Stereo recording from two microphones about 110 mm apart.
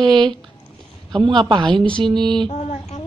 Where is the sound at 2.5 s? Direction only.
85° left.